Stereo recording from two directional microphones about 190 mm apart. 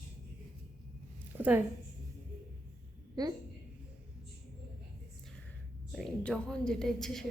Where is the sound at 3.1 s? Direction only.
20° right (ahead or behind).